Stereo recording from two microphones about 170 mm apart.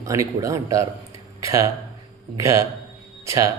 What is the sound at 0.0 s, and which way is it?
A man's voice, 20° right (ahead or behind).